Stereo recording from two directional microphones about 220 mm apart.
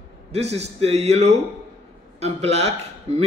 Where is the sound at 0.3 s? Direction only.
30° right (ahead or behind).